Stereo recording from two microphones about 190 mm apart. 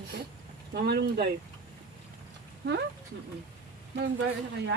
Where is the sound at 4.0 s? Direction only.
60° right (ahead or behind).